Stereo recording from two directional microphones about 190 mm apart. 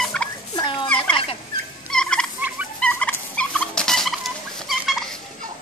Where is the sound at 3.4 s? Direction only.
5° left (ahead or behind).